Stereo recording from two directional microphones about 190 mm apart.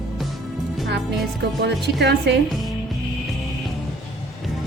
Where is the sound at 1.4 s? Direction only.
60° right (ahead or behind).